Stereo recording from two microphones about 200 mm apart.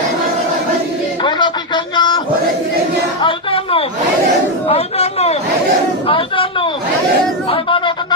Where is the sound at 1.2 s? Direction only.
20° left (ahead or behind).